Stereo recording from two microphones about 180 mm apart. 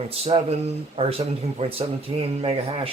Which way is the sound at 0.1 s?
30° right (ahead or behind).